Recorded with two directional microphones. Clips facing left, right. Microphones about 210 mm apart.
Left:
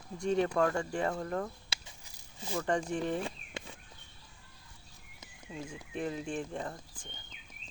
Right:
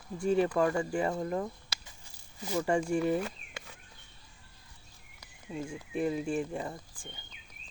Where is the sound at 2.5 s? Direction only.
10° right (ahead or behind).